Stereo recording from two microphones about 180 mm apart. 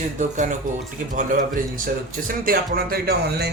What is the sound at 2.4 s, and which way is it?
Speech, 60° right (ahead or behind).